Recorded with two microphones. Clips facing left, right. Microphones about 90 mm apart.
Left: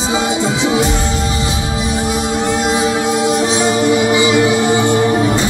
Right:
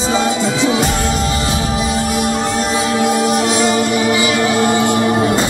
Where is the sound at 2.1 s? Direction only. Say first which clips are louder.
Even; 20° left (ahead or behind).